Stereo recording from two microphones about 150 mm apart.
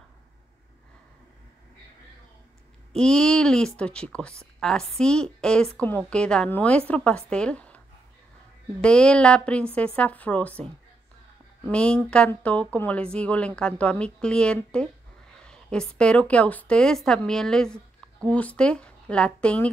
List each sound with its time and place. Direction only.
3.0 s a woman's voice: 5° left (ahead or behind)
8.8 s a woman's voice: 5° left (ahead or behind)